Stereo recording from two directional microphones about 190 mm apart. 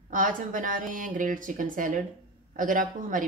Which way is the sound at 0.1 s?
45° right (ahead or behind).